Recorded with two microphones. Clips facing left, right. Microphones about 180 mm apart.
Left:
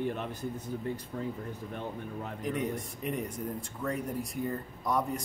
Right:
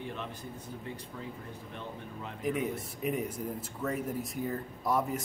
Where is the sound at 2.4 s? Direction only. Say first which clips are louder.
Right 1 dB; 5° right (ahead or behind).